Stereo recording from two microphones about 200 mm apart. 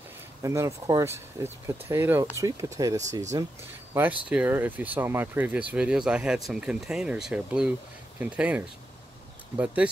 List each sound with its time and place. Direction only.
0.4 s speech: 15° right (ahead or behind)